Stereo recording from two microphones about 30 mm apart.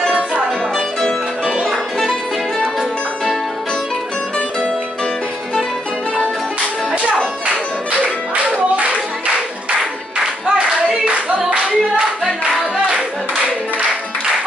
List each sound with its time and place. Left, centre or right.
1.6 s music: centre
8.5 s clapping: right
10.4 s clapping: right